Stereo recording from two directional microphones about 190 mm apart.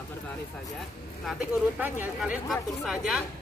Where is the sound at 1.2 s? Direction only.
5° right (ahead or behind).